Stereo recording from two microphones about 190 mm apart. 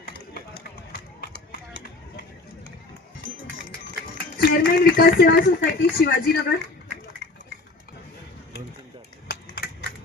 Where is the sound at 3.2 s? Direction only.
90° right.